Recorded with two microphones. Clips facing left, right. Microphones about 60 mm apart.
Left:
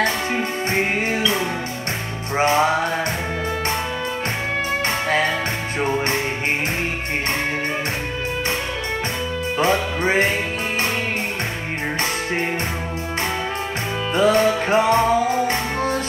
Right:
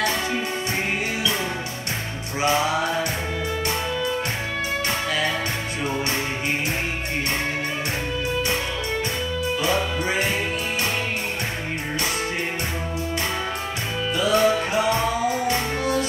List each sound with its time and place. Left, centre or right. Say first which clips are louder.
0.0 s music: left 3 dB; left
2.3 s music: left 4 dB; left
9.6 s music: left 6 dB; left
14.1 s music: left 3 dB; left